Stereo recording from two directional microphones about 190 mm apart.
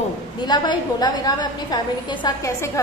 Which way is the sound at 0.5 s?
20° left (ahead or behind).